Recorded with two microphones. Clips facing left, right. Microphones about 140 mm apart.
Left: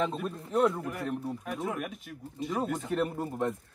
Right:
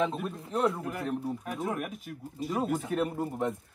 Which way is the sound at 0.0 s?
Centre (ahead or behind).